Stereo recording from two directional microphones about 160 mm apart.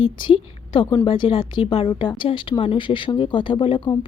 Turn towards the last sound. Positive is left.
turn(degrees=30)  # may be behind; listen again after turning